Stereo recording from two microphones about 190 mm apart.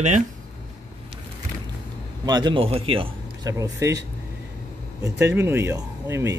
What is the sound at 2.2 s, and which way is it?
Speech, 20° right (ahead or behind).